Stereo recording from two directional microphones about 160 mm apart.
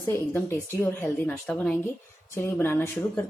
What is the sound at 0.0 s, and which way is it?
A woman's voice, 15° left (ahead or behind).